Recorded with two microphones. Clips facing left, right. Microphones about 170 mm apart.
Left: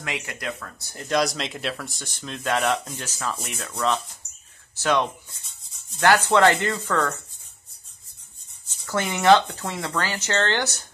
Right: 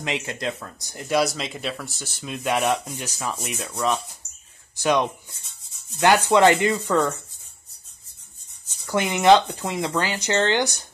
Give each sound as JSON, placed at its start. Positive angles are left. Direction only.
{"t": 0.0, "sound": "speech", "side_deg": -25}
{"t": 8.6, "sound": "speech", "side_deg": -15}